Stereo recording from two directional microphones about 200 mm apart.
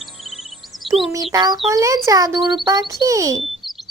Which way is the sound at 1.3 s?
20° right (ahead or behind).